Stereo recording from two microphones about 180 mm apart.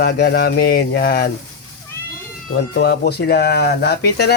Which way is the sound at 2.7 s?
60° left (ahead or behind).